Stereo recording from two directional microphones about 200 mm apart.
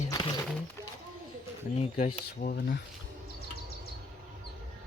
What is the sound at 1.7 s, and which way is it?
Speech, 30° left (ahead or behind).